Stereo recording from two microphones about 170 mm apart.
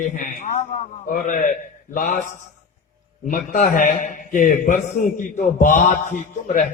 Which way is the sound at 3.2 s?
50° left (ahead or behind).